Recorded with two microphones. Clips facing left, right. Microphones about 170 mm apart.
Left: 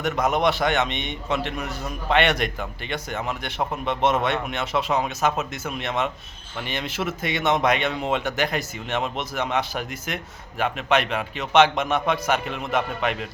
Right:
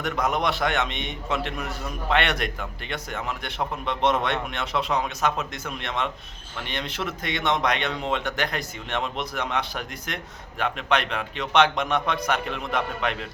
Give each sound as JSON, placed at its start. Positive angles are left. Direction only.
{"t": 0.0, "sound": "a man's voice", "side_deg": 0}